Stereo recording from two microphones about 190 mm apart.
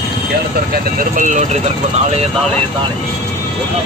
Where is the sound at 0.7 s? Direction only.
45° right (ahead or behind).